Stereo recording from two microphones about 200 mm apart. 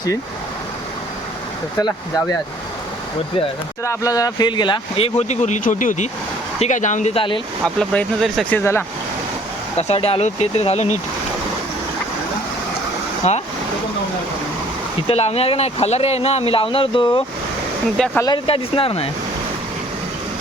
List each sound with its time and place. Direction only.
3.8 s speech: 15° left (ahead or behind)
7.6 s speech: 5° left (ahead or behind)
9.7 s speech: 30° left (ahead or behind)
13.2 s speech: 35° left (ahead or behind)
15.0 s speech: 30° left (ahead or behind)
17.9 s speech: 5° left (ahead or behind)
18.2 s speech: 25° left (ahead or behind)